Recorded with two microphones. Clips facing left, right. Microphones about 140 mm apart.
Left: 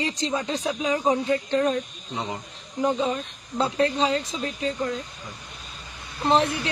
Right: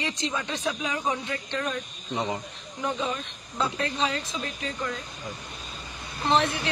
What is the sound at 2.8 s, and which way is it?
Speech, 35° left (ahead or behind).